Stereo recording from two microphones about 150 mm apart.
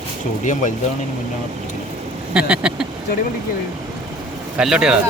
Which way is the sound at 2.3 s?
5° right (ahead or behind).